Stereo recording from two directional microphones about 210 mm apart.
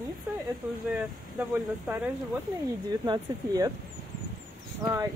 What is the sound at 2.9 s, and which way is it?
Speech, 20° right (ahead or behind).